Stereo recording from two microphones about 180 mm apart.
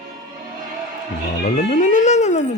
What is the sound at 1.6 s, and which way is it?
Music, 45° left (ahead or behind).